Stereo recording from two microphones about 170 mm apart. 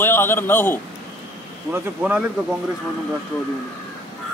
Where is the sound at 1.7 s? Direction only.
10° right (ahead or behind).